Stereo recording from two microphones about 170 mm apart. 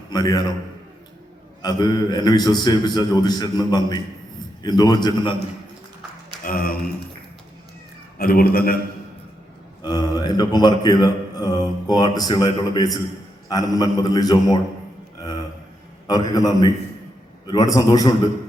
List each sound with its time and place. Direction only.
0.1 s speech: 25° left (ahead or behind)
1.6 s speech: 25° left (ahead or behind)
6.4 s speech: 60° left (ahead or behind)
8.2 s a man's voice: 60° left (ahead or behind)
9.8 s speech: 25° left (ahead or behind)
16.0 s a man's voice: 20° left (ahead or behind)